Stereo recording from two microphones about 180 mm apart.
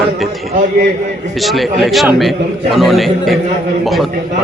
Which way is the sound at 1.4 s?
Centre (ahead or behind).